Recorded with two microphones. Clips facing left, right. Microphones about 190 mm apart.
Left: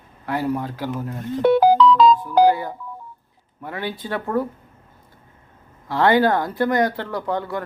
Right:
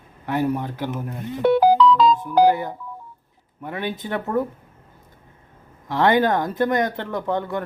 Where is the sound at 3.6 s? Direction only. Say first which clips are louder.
Right 1 dB; 20° right (ahead or behind).